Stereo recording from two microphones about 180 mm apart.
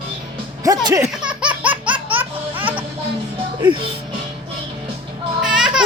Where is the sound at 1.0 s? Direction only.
5° right (ahead or behind).